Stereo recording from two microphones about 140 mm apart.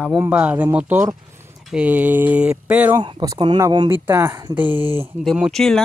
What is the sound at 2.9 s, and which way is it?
Speech, 30° right (ahead or behind).